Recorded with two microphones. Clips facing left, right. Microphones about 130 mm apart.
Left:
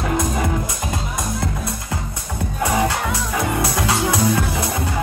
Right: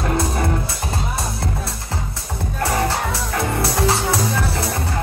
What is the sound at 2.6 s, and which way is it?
Music, 15° left (ahead or behind).